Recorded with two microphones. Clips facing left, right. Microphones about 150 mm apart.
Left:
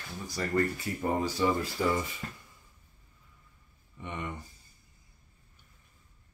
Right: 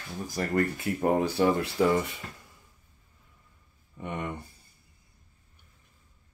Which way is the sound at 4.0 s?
50° right (ahead or behind).